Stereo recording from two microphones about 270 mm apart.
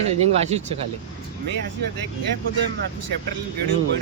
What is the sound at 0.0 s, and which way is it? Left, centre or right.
Speech, right.